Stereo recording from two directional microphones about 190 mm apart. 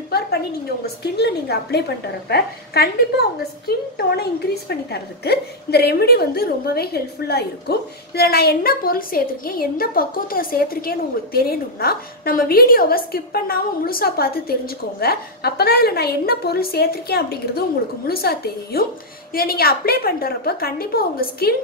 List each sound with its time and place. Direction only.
0.8 s a woman's voice: 60° left (ahead or behind)